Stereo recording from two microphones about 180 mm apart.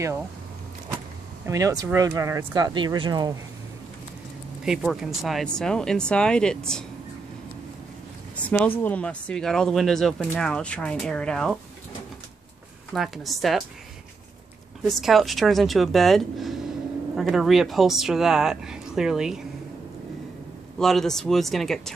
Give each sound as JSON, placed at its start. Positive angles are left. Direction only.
{"t": 1.4, "sound": "speech", "side_deg": -20}
{"t": 4.6, "sound": "speech", "side_deg": 0}
{"t": 8.5, "sound": "speech", "side_deg": 10}
{"t": 12.9, "sound": "speech", "side_deg": 0}
{"t": 14.8, "sound": "speech", "side_deg": 0}
{"t": 20.8, "sound": "speech", "side_deg": 0}